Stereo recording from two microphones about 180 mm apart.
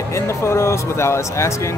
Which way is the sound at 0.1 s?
15° left (ahead or behind).